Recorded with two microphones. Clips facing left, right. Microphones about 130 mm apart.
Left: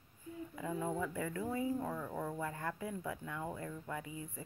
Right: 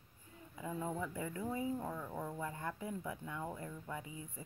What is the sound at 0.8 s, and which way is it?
Speech, 20° right (ahead or behind).